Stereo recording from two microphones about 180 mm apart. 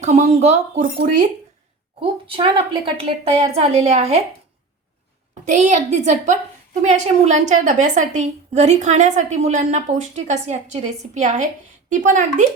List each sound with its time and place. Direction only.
0.0 s a woman's voice: 40° right (ahead or behind)
2.0 s a woman's voice: 30° right (ahead or behind)
5.3 s a woman's voice: 40° right (ahead or behind)